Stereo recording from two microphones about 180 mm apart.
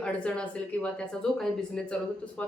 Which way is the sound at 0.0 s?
5° left (ahead or behind).